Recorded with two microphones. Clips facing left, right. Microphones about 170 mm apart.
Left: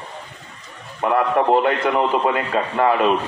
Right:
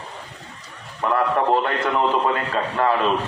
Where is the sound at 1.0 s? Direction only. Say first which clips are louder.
Left 2 dB; 15° left (ahead or behind).